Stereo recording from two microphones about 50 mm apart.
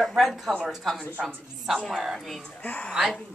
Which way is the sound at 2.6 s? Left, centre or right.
Left.